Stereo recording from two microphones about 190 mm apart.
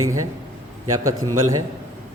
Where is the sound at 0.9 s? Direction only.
15° right (ahead or behind).